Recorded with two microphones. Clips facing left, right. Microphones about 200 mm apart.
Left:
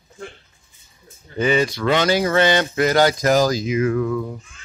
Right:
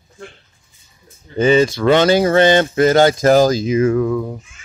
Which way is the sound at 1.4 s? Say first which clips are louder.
Right 6 dB; 25° right (ahead or behind).